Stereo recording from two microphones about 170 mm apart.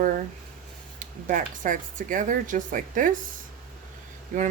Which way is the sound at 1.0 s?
50° right (ahead or behind).